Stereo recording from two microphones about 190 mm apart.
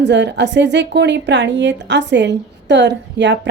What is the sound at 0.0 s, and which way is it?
A woman's voice, 65° right (ahead or behind).